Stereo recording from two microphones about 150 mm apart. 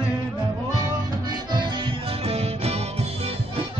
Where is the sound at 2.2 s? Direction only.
45° right (ahead or behind).